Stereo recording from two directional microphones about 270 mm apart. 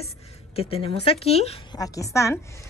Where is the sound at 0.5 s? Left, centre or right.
Left.